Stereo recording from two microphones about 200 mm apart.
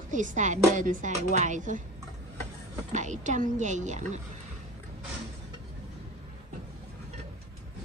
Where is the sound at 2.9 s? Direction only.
35° right (ahead or behind).